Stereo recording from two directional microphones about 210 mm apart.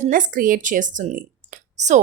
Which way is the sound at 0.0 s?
40° right (ahead or behind).